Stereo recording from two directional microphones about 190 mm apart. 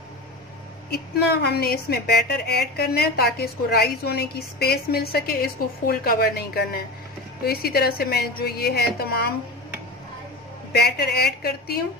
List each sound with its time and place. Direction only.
0.8 s a woman's voice: 55° left (ahead or behind)
10.7 s a woman's voice: 60° left (ahead or behind)